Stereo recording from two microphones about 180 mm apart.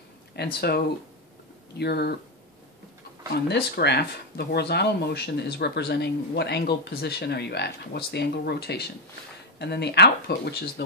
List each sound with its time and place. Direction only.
0.4 s speech: 65° left (ahead or behind)
3.3 s speech: 65° left (ahead or behind)